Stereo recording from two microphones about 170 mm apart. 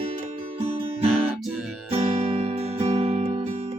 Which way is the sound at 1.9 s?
35° right (ahead or behind).